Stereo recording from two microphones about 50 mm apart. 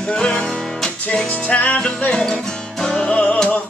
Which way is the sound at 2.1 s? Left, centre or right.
Centre.